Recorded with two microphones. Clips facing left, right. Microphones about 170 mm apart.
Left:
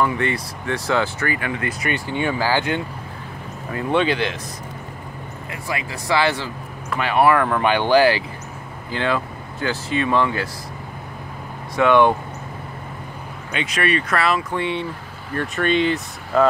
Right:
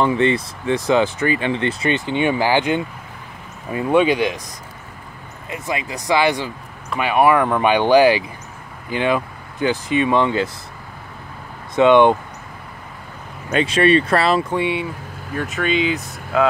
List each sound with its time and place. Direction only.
0.0 s speech: 20° right (ahead or behind)
5.5 s speech: 20° right (ahead or behind)
11.7 s speech: 20° right (ahead or behind)
13.7 s speech: 30° right (ahead or behind)
14.5 s speech: 15° right (ahead or behind)
15.3 s speech: centre (ahead or behind)